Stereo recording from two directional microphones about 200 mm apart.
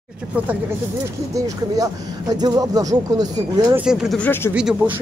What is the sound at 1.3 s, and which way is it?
Speech, 20° right (ahead or behind).